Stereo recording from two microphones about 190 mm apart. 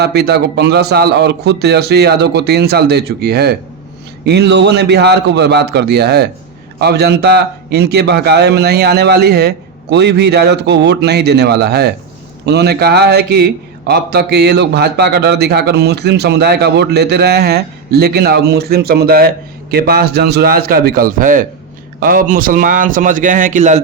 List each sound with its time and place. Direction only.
0.0 s a man's voice: 60° right (ahead or behind); by 23.8 s 40° right (ahead or behind)